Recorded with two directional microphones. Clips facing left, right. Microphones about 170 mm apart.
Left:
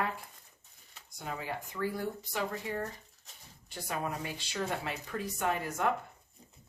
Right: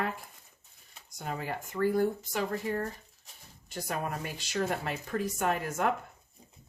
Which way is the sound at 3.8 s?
45° right (ahead or behind).